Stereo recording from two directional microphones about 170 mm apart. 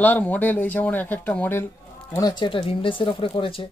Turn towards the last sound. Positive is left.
turn(degrees=30)  # may be behind; listen again after turning